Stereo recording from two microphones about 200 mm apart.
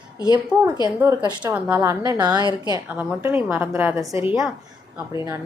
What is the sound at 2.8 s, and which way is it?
A woman's voice, 10° right (ahead or behind).